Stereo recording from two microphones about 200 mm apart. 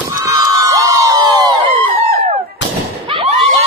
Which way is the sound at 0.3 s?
15° right (ahead or behind).